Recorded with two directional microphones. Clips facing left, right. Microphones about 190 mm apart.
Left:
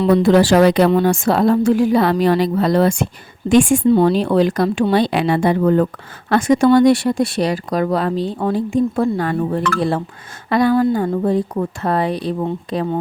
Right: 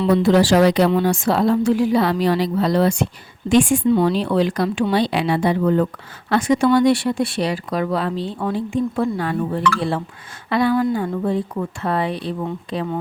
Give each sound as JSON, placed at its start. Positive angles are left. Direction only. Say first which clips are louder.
{"t": 0.0, "sound": "speech", "louder": "left 3 dB", "side_deg": 50}